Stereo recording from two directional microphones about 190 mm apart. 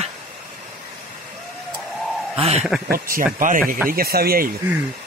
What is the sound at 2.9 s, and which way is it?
Speech, 50° right (ahead or behind).